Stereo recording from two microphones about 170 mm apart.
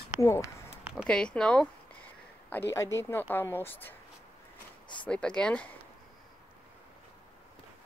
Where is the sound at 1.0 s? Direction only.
5° left (ahead or behind).